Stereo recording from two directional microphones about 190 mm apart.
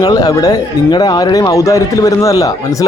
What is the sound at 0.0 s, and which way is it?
Speech, 20° left (ahead or behind).